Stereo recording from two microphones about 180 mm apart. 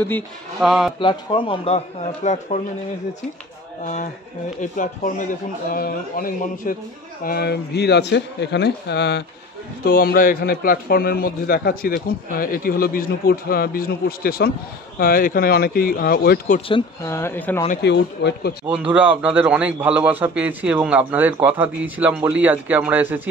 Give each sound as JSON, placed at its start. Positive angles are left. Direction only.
{"t": 0.6, "sound": "a man's voice", "side_deg": 0}
{"t": 0.9, "sound": "speech", "side_deg": 25}
{"t": 2.2, "sound": "speech", "side_deg": 40}
{"t": 3.8, "sound": "speech", "side_deg": 45}
{"t": 7.2, "sound": "speech", "side_deg": 65}
{"t": 9.8, "sound": "a man's voice", "side_deg": 55}
{"t": 17.0, "sound": "speech", "side_deg": 15}
{"t": 17.8, "sound": "speech", "side_deg": 70}
{"t": 18.7, "sound": "a man's voice", "side_deg": -5}